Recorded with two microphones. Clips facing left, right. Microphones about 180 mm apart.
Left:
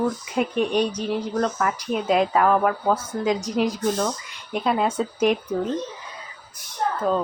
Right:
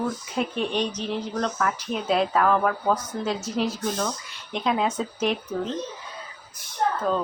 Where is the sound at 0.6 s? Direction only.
10° left (ahead or behind).